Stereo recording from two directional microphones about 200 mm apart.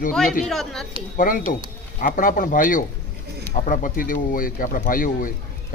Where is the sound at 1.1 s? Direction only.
45° left (ahead or behind).